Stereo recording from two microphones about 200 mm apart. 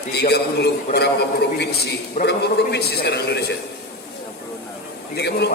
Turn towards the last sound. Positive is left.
turn(degrees=55)  # may be behind; listen again after turning